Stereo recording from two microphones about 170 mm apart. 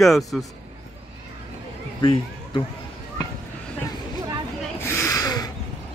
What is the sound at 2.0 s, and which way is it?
Speech, 30° left (ahead or behind).